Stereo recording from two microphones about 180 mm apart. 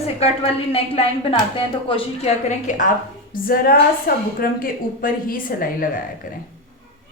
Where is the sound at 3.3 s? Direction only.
50° left (ahead or behind).